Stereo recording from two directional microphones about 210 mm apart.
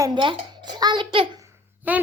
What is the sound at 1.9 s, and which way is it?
Speech, 10° right (ahead or behind).